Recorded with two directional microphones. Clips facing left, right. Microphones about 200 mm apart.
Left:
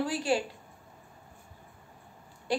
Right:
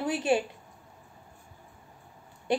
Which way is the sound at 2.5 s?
20° right (ahead or behind).